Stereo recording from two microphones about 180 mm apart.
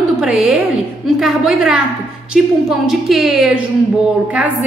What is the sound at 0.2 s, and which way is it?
A woman's voice, 5° right (ahead or behind).